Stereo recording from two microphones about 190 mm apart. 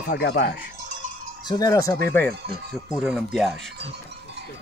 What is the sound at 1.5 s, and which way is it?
Speech, 20° left (ahead or behind).